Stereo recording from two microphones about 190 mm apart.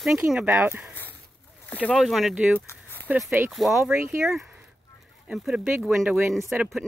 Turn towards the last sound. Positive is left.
turn(degrees=0)  # may be behind; listen again after turning